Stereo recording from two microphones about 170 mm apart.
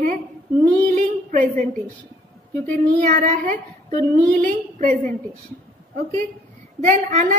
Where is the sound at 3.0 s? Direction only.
50° right (ahead or behind).